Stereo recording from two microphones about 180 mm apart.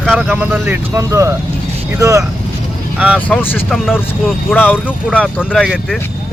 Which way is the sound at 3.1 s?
10° left (ahead or behind).